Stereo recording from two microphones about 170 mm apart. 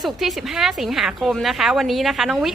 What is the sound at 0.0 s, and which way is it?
A woman's voice, centre (ahead or behind).